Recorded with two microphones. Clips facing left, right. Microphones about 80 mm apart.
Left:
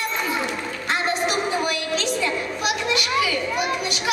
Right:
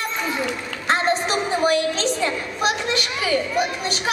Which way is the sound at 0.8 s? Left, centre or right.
Right.